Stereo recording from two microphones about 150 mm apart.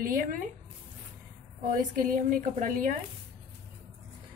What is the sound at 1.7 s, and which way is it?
A woman's voice, 65° right (ahead or behind).